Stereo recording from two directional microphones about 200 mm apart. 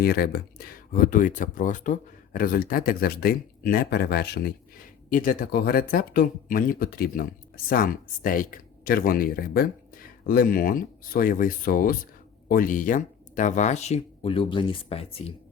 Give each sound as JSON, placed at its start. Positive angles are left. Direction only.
{"t": 0.0, "sound": "speech", "side_deg": 50}